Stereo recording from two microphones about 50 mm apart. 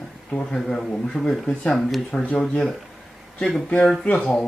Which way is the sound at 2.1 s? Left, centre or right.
Left.